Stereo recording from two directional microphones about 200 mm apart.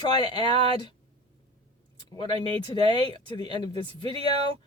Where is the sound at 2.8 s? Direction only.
20° left (ahead or behind).